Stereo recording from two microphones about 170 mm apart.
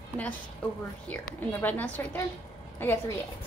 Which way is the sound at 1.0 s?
10° left (ahead or behind).